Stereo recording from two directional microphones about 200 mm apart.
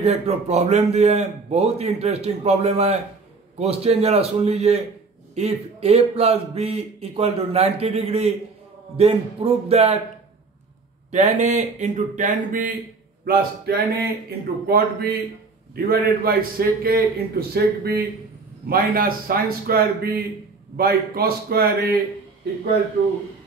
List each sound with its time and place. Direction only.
0.0 s a man's voice: 30° right (ahead or behind)
11.1 s a man's voice: 35° right (ahead or behind)